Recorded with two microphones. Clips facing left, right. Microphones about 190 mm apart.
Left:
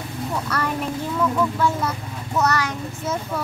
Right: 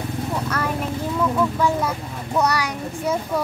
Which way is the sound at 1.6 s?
10° right (ahead or behind).